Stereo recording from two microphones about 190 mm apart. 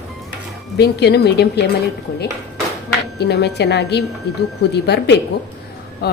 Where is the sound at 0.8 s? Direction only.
60° left (ahead or behind).